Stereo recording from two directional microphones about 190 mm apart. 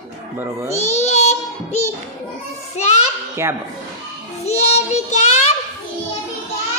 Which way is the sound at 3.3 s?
10° right (ahead or behind).